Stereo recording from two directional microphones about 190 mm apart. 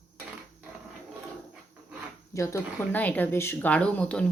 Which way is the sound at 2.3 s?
15° left (ahead or behind).